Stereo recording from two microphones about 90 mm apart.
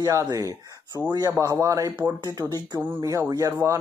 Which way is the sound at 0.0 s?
40° right (ahead or behind).